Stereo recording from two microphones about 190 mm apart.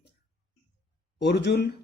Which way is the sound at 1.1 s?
60° left (ahead or behind).